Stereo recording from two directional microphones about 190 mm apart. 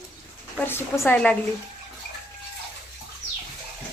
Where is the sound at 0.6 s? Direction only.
10° left (ahead or behind).